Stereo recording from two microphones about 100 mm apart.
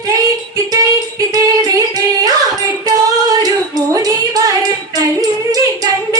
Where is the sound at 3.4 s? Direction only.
40° right (ahead or behind).